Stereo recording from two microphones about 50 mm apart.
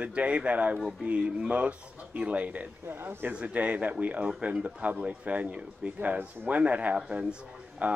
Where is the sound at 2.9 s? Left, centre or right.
Right.